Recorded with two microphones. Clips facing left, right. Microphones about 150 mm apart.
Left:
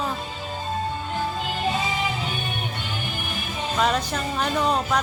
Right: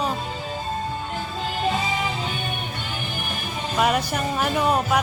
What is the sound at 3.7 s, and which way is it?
Speech, 10° right (ahead or behind).